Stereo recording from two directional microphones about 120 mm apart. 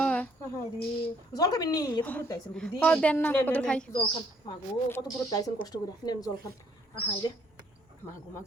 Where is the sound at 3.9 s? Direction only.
45° left (ahead or behind).